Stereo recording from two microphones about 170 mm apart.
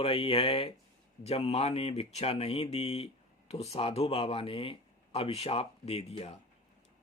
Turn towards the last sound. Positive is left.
turn(degrees=35)  # may be behind; listen again after turning